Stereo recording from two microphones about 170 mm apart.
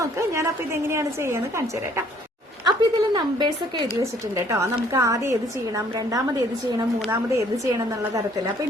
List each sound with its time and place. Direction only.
0.0 s a woman's voice: 15° right (ahead or behind)
2.6 s a woman's voice: 25° right (ahead or behind)